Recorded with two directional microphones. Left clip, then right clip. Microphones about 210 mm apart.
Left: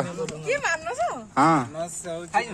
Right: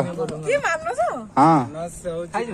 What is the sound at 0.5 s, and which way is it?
Speech, 15° right (ahead or behind).